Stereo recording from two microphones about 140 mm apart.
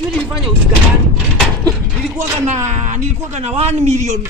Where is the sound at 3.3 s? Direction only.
50° right (ahead or behind).